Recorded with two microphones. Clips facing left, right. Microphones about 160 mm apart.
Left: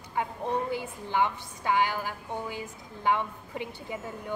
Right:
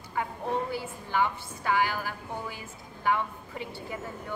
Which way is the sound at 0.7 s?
20° left (ahead or behind).